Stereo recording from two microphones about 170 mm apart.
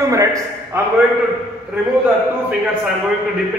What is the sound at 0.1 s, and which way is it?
Speech, 20° right (ahead or behind).